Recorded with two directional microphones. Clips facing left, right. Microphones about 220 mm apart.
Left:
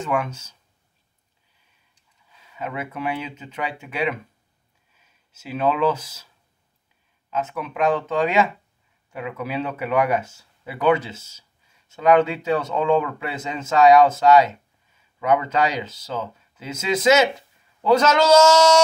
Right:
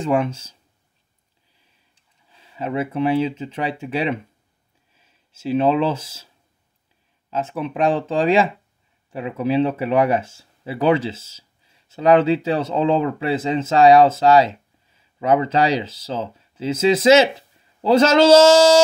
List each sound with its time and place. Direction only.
0.0 s speech: 30° right (ahead or behind)
2.2 s speech: 30° right (ahead or behind)